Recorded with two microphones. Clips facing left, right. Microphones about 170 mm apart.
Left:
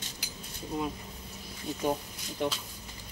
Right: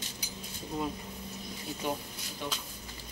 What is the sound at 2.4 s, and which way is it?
Speech, 60° left (ahead or behind).